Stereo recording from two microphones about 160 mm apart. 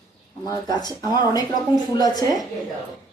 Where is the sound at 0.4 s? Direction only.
25° left (ahead or behind).